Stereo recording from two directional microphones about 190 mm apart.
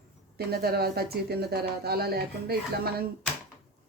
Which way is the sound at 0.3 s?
55° right (ahead or behind).